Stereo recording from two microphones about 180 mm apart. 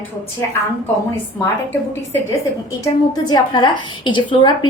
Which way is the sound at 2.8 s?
20° left (ahead or behind).